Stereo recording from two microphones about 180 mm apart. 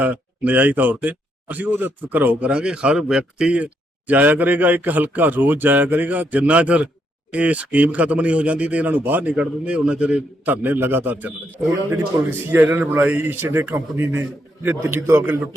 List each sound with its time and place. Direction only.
0.0 s a man's voice: 10° right (ahead or behind)